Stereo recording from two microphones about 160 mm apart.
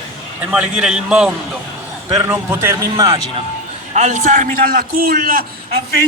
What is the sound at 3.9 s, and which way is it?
A man's voice, 45° right (ahead or behind).